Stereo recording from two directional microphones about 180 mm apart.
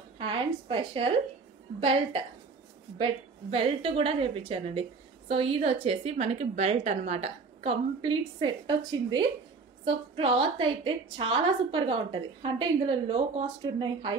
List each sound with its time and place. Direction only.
0.2 s a woman's voice: 30° right (ahead or behind)